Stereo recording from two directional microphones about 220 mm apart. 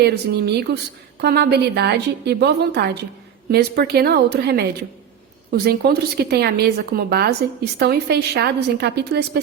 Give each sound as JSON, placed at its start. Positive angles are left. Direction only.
{"t": 0.0, "sound": "a woman's voice", "side_deg": -45}